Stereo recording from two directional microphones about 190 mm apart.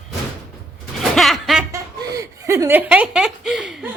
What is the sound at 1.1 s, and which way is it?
Music, centre (ahead or behind).